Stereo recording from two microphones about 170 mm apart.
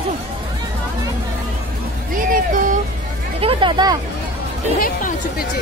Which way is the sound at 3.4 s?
30° right (ahead or behind).